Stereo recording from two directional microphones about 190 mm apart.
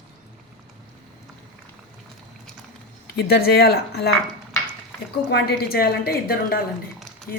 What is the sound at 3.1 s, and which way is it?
Speech, 55° left (ahead or behind).